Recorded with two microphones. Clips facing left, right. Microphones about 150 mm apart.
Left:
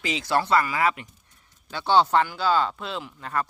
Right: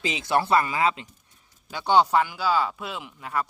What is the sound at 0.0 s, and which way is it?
Speech, 20° right (ahead or behind).